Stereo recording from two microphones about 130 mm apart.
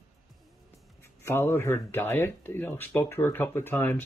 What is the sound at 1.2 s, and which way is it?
Speech, 15° left (ahead or behind).